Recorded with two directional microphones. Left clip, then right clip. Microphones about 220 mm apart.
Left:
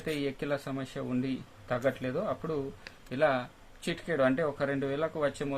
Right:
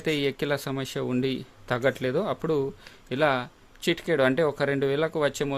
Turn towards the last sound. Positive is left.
turn(degrees=-50)  # may be behind; listen again after turning